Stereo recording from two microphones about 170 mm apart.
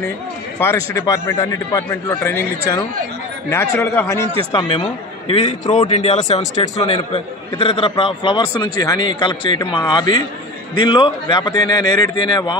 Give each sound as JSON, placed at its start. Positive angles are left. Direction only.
{"t": 0.6, "sound": "speech", "side_deg": 15}
{"t": 4.5, "sound": "a man's voice", "side_deg": 30}